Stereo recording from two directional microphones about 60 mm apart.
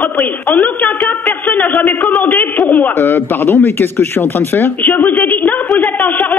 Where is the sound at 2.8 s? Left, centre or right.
Left.